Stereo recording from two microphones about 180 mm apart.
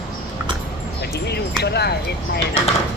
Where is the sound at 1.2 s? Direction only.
65° left (ahead or behind).